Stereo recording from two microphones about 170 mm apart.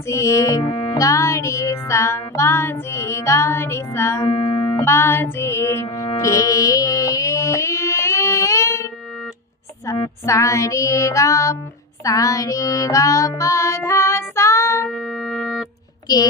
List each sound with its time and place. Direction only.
0.1 s music: 15° left (ahead or behind)
4.8 s music: 15° left (ahead or behind)
12.0 s child singing: 20° left (ahead or behind)
14.8 s music: centre (ahead or behind)